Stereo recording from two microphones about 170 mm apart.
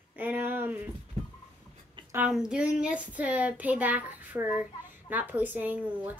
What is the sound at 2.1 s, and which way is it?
A child's voice, 10° right (ahead or behind).